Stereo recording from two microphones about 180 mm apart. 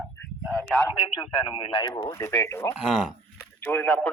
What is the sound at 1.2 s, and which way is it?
Speech, 25° left (ahead or behind).